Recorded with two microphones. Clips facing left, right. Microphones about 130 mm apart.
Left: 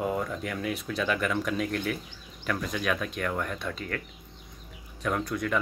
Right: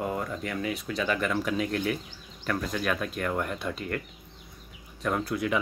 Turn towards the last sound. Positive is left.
turn(degrees=-5)  # may be behind; listen again after turning